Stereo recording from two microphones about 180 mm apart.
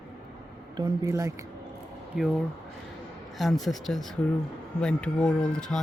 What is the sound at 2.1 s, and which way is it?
Speech, 5° right (ahead or behind).